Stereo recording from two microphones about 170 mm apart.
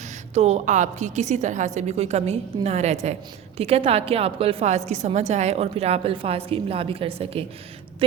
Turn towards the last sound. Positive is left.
turn(degrees=-35)  # may be behind; listen again after turning